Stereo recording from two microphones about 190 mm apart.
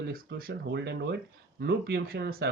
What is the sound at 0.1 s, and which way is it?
Speech, 50° right (ahead or behind).